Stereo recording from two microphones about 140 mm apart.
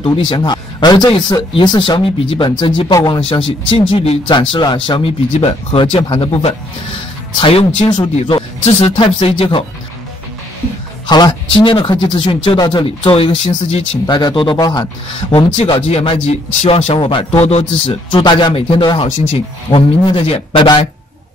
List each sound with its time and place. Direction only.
0.0 s speech: 35° left (ahead or behind)
4.3 s speech: 35° left (ahead or behind)
11.1 s speech: 30° left (ahead or behind)
14.0 s speech: 30° left (ahead or behind)
15.3 s speech: 45° left (ahead or behind)
18.1 s speech: 30° left (ahead or behind)